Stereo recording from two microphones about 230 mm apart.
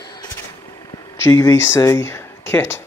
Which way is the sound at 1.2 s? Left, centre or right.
Centre.